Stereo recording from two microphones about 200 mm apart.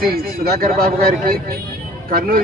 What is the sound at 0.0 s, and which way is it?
A man's voice, 45° right (ahead or behind).